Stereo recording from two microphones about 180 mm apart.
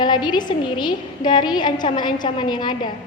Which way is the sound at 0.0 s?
25° left (ahead or behind).